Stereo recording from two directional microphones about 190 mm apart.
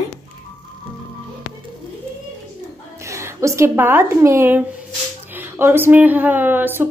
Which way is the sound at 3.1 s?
15° right (ahead or behind).